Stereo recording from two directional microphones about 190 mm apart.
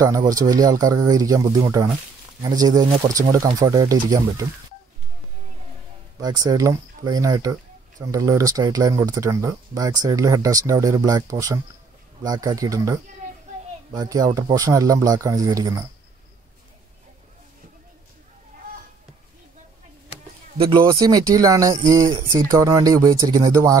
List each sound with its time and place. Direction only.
0.0 s speech: 20° right (ahead or behind)
6.2 s speech: 20° right (ahead or behind)
20.5 s speech: 30° right (ahead or behind)